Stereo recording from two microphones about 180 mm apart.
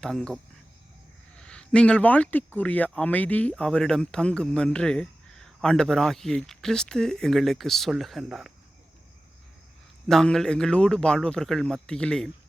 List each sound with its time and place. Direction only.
0.0 s speech: 5° left (ahead or behind)
1.4 s speech: 5° left (ahead or behind)
10.1 s speech: 5° left (ahead or behind)